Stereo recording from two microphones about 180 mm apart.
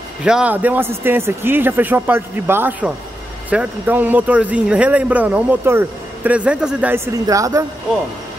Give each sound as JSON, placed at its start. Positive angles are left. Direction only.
{"t": 0.2, "sound": "speech", "side_deg": -5}
{"t": 7.2, "sound": "speech", "side_deg": -20}